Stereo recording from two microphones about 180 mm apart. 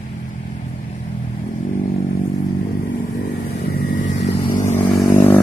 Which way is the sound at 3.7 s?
55° left (ahead or behind).